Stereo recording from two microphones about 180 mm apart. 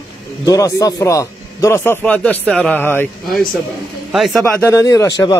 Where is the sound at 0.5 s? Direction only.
20° left (ahead or behind).